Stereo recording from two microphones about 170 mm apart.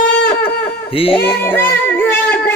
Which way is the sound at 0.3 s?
10° left (ahead or behind).